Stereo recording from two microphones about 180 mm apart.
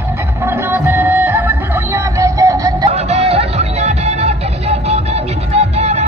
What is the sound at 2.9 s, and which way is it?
Music, 35° right (ahead or behind).